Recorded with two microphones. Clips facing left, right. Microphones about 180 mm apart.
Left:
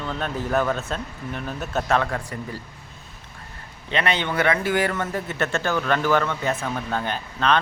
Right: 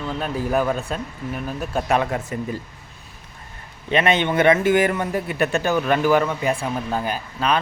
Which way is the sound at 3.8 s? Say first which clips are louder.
Right 5 dB; 20° right (ahead or behind).